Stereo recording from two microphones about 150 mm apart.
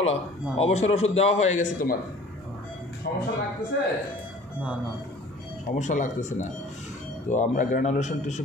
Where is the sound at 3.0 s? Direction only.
90° left.